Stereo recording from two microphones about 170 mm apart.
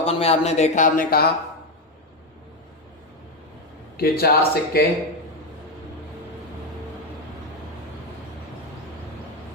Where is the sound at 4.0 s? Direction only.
65° left (ahead or behind).